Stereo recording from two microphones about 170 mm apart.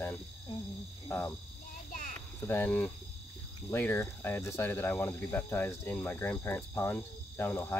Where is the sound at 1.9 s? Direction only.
50° left (ahead or behind).